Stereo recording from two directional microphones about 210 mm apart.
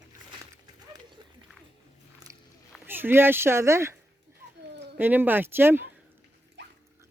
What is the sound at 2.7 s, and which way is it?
Speech, 10° right (ahead or behind).